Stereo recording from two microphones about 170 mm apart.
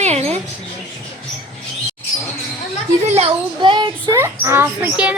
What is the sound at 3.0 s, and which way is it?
Speech, 40° right (ahead or behind).